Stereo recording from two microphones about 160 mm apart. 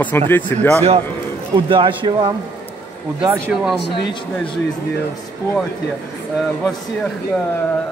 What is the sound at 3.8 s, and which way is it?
Speech, 90° left.